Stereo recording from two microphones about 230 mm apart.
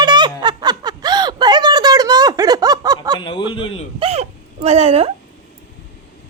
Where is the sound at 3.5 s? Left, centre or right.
Left.